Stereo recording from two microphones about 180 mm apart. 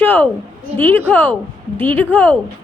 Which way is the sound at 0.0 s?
10° left (ahead or behind).